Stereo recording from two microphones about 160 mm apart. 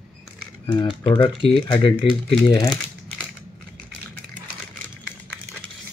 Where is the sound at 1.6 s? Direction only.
30° left (ahead or behind).